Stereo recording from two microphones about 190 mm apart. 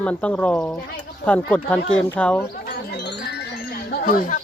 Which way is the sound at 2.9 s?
65° left (ahead or behind).